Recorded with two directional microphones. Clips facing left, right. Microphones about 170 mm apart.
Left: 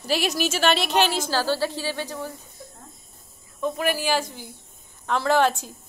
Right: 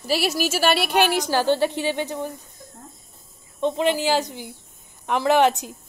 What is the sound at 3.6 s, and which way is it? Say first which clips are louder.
A woman's voice: right 4 dB; 20° right (ahead or behind).